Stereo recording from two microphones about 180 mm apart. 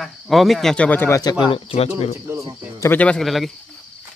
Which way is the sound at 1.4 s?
30° left (ahead or behind).